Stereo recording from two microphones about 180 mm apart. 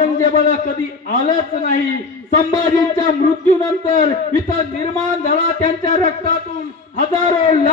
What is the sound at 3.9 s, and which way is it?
A man's voice, 40° left (ahead or behind).